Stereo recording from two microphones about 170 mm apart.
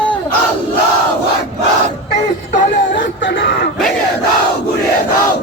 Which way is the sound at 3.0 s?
90° left.